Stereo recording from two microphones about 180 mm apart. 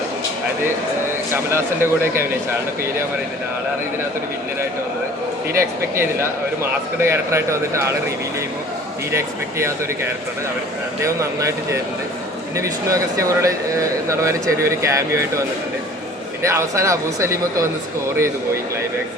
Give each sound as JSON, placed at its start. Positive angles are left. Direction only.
{"t": 1.5, "sound": "speech", "side_deg": -15}
{"t": 5.5, "sound": "speech", "side_deg": -15}
{"t": 9.1, "sound": "speech", "side_deg": -15}
{"t": 11.0, "sound": "speech", "side_deg": -15}
{"t": 16.4, "sound": "speech", "side_deg": -15}